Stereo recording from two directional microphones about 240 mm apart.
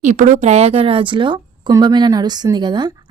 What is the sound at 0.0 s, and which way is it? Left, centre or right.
A woman's voice, right.